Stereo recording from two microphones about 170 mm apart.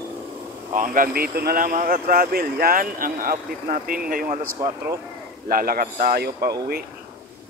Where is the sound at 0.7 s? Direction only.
50° right (ahead or behind).